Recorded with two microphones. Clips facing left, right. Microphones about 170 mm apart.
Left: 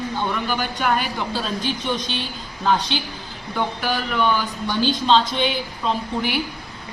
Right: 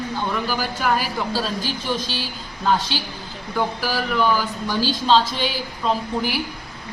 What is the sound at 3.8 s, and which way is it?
Speech, 5° right (ahead or behind).